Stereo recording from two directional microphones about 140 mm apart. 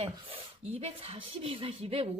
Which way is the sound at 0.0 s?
50° right (ahead or behind).